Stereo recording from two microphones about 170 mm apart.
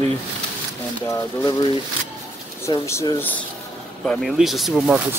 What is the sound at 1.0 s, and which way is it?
Speech, 15° left (ahead or behind).